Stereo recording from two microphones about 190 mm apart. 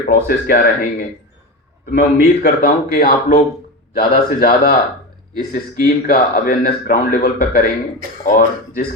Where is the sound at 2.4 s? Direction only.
45° left (ahead or behind).